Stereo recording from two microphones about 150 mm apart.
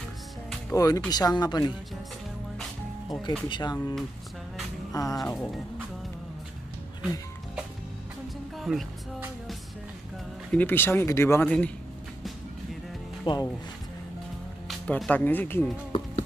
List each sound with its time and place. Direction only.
0.7 s speech: 25° left (ahead or behind)
3.4 s speech: 30° left (ahead or behind)
4.9 s speech: 25° left (ahead or behind)
8.5 s music: centre (ahead or behind)
10.5 s speech: 10° left (ahead or behind)
13.2 s speech: 30° left (ahead or behind)
14.7 s speech: 5° left (ahead or behind)